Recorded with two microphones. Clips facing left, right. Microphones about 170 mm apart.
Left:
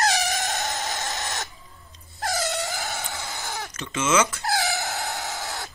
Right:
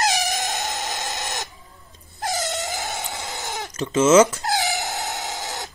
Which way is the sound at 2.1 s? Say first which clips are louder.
Right 1 dB; 20° right (ahead or behind).